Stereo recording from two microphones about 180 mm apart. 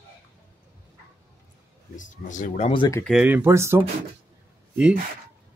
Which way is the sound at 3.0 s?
5° right (ahead or behind).